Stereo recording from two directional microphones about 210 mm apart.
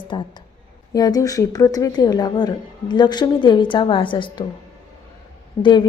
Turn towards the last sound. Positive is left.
turn(degrees=20)  # may be behind; listen again after turning